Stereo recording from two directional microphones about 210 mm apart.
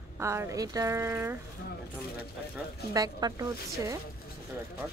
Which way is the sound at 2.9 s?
15° right (ahead or behind).